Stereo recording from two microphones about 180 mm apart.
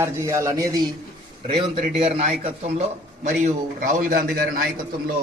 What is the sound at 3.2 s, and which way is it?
A man's voice, 45° right (ahead or behind).